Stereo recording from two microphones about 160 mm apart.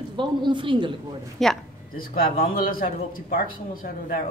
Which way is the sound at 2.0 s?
65° left (ahead or behind).